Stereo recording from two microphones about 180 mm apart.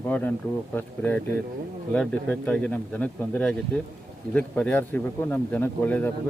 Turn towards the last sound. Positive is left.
turn(degrees=10)  # may be behind; listen again after turning